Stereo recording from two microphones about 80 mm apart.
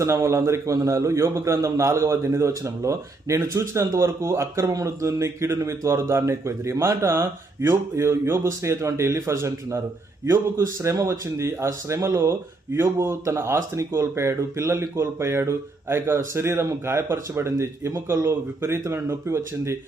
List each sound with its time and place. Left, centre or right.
0.0 s speech: right